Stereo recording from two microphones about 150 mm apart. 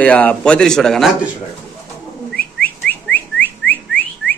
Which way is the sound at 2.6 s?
10° left (ahead or behind).